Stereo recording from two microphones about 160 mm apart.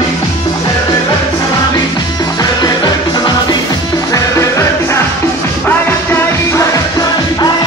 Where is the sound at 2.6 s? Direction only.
25° left (ahead or behind).